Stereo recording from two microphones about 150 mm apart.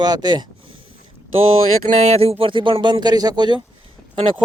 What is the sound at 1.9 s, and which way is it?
Speech, 45° right (ahead or behind).